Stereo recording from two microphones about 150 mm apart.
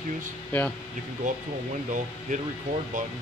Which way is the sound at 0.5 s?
10° left (ahead or behind).